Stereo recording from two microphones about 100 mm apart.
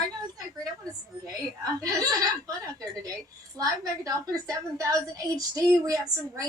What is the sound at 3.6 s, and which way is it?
A woman's voice, 35° right (ahead or behind).